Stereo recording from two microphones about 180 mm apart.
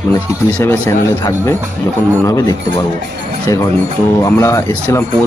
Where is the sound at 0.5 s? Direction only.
10° left (ahead or behind).